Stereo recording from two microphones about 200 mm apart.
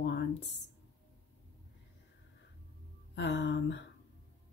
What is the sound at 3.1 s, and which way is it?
Speech, 60° left (ahead or behind).